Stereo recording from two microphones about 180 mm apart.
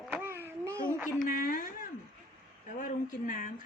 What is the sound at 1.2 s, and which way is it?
Speech, 50° left (ahead or behind).